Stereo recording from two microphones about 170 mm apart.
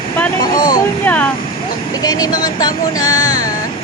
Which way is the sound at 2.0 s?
20° left (ahead or behind).